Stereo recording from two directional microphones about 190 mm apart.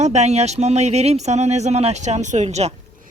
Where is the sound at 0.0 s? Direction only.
35° right (ahead or behind).